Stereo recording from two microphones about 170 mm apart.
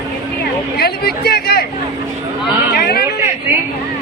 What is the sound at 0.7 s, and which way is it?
Speech, 70° left (ahead or behind).